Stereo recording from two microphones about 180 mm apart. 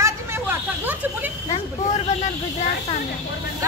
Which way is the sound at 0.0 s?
10° right (ahead or behind).